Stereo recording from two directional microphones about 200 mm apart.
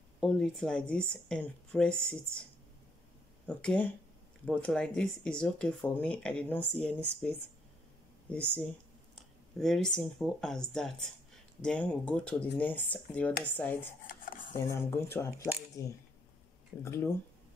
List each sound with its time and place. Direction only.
0.2 s speech: 5° left (ahead or behind)
3.4 s speech: 5° left (ahead or behind)
9.6 s speech: centre (ahead or behind)